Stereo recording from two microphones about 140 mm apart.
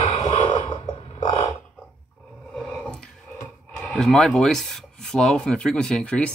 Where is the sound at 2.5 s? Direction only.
Centre (ahead or behind).